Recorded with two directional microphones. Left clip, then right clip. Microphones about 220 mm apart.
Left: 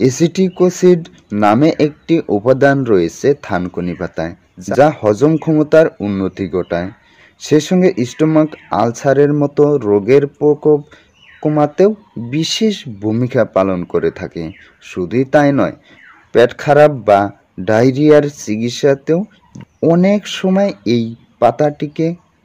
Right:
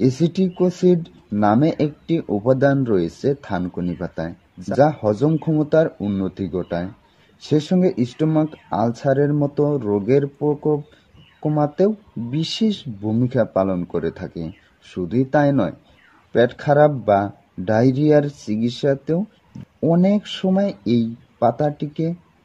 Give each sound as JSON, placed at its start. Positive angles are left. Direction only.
{"t": 0.0, "sound": "speech", "side_deg": 30}